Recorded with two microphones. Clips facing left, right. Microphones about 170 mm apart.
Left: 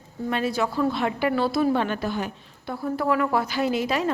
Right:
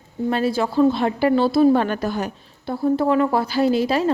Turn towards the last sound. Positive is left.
turn(degrees=-30)  # may be behind; listen again after turning